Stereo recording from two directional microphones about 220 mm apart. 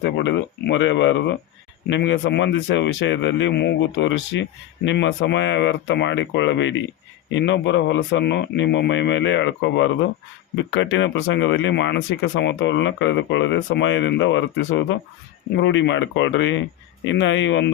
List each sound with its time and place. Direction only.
0.0 s speech: 55° left (ahead or behind)